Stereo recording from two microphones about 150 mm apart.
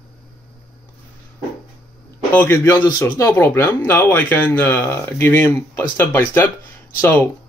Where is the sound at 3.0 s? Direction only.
15° left (ahead or behind).